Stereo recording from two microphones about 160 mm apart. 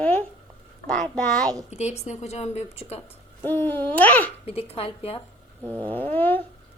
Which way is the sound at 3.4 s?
10° left (ahead or behind).